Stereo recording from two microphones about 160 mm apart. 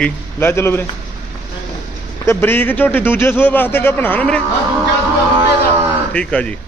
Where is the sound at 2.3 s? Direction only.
15° left (ahead or behind).